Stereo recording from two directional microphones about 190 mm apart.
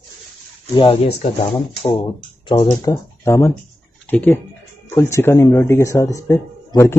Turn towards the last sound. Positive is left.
turn(degrees=15)  # may be behind; listen again after turning